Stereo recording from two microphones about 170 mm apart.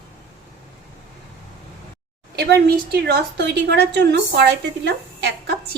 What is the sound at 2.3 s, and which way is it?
Speech, 70° right (ahead or behind).